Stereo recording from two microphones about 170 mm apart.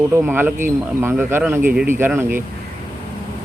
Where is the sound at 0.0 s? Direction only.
15° right (ahead or behind).